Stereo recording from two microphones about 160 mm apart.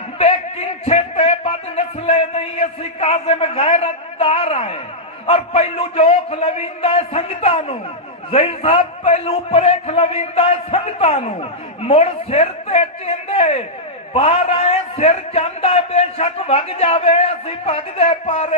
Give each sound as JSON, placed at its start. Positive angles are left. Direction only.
{"t": 0.9, "sound": "a man's voice", "side_deg": 40}